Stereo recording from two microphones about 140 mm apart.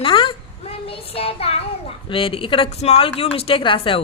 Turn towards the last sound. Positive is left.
turn(degrees=40)  # may be behind; listen again after turning